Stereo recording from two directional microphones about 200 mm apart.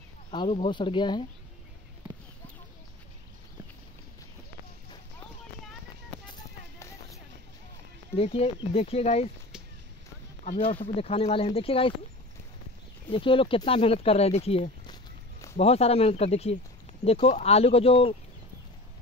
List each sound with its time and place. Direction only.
0.3 s speech: 25° left (ahead or behind)
8.2 s speech: 30° left (ahead or behind)
10.8 s speech: 30° left (ahead or behind)
13.1 s speech: 25° left (ahead or behind)